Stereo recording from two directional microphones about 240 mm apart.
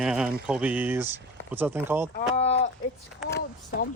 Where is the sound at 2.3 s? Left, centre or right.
Left.